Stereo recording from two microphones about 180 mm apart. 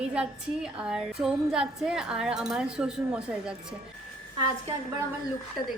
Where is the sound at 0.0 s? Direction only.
5° right (ahead or behind).